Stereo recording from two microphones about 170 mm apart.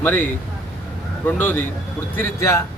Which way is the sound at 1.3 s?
10° left (ahead or behind).